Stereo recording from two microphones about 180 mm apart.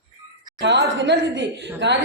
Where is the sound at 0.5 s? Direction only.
80° right.